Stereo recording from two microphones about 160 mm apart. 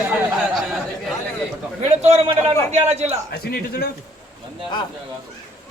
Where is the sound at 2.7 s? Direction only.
40° right (ahead or behind).